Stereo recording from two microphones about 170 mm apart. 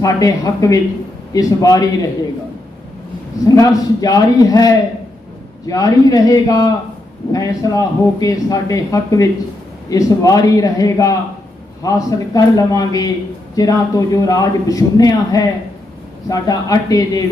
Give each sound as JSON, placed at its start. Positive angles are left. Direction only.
{"t": 0.0, "sound": "a man's voice", "side_deg": 20}
{"t": 3.5, "sound": "a man's voice", "side_deg": 20}